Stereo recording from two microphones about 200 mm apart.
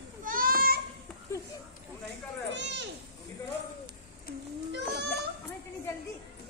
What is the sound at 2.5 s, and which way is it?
Children playing, 60° right (ahead or behind).